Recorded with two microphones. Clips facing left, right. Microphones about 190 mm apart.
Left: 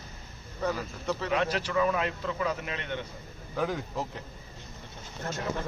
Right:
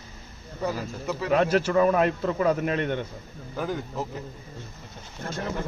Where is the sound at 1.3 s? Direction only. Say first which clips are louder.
Right 8 dB; 45° right (ahead or behind).